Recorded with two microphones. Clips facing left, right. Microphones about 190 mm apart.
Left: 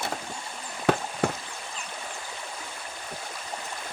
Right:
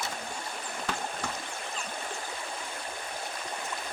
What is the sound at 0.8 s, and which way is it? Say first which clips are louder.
Chop: left 11 dB; 60° left (ahead or behind).